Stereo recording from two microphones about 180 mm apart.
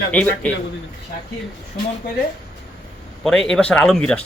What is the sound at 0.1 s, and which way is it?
Speech, 10° left (ahead or behind).